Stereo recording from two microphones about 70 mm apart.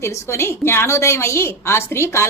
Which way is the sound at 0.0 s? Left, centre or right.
Left.